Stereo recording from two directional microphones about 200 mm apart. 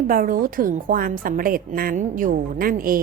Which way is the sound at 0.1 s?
45° right (ahead or behind).